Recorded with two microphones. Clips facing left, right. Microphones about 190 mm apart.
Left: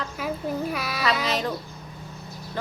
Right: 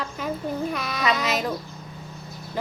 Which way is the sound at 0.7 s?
5° left (ahead or behind).